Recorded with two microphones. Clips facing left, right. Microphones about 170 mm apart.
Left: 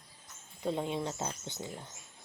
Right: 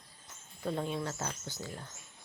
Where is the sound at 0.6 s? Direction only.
20° left (ahead or behind).